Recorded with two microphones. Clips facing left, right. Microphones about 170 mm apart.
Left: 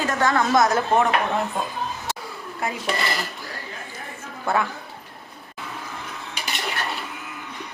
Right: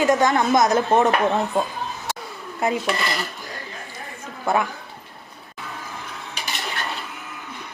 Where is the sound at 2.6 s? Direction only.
20° right (ahead or behind).